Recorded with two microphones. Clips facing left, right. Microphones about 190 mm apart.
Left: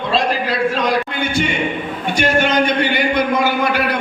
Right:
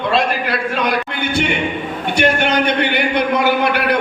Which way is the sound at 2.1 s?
60° right (ahead or behind).